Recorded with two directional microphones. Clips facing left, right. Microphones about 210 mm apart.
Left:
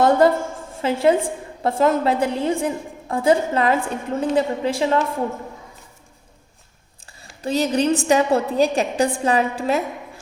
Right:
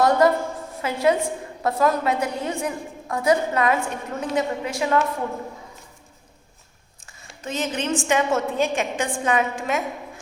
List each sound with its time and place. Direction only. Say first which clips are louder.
0.0 s a woman's voice: left 2 dB; 30° left (ahead or behind)
7.0 s a sound: left 7 dB; 35° left (ahead or behind)
8.0 s a woman's voice: left 4 dB; 35° left (ahead or behind)